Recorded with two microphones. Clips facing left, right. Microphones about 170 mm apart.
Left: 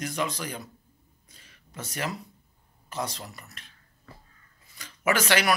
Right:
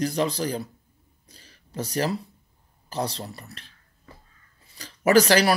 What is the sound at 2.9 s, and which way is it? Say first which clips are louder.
Speech: right 4 dB; 35° right (ahead or behind).